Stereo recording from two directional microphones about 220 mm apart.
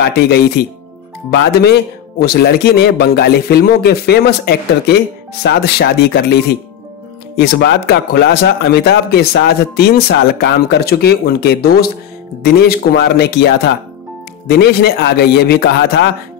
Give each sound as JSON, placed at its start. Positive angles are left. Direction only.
{"t": 0.0, "sound": "a man's voice", "side_deg": 45}
{"t": 14.5, "sound": "a man's voice", "side_deg": 45}